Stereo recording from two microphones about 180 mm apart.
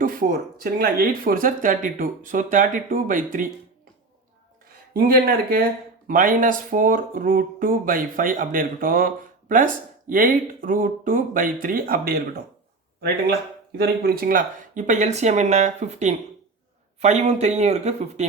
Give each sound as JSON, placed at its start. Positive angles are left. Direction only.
{"t": 0.0, "sound": "speech", "side_deg": -50}
{"t": 4.9, "sound": "speech", "side_deg": -55}
{"t": 13.7, "sound": "speech", "side_deg": -60}